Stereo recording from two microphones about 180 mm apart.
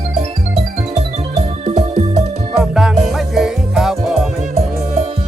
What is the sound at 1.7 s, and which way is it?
Music, 40° right (ahead or behind).